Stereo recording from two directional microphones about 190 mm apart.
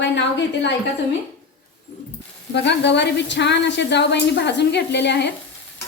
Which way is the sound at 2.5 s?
65° left (ahead or behind).